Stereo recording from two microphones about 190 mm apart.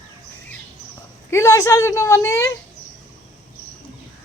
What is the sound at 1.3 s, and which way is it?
A woman's voice, 15° left (ahead or behind).